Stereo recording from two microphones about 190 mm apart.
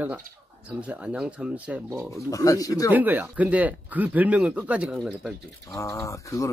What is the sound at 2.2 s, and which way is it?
Speech, 20° left (ahead or behind).